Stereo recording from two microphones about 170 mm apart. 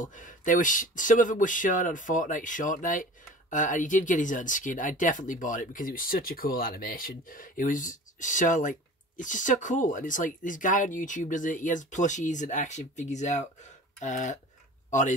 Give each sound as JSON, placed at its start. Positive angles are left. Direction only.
{"t": 0.0, "sound": "a man's voice", "side_deg": 50}
{"t": 13.9, "sound": "a sound", "side_deg": 45}
{"t": 14.9, "sound": "speech", "side_deg": 45}